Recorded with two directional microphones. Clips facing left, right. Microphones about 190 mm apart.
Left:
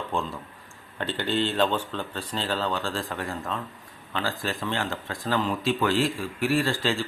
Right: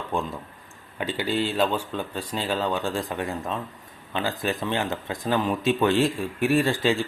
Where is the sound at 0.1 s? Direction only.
15° right (ahead or behind).